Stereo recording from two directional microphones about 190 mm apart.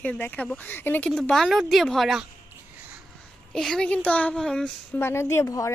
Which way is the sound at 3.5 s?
5° left (ahead or behind).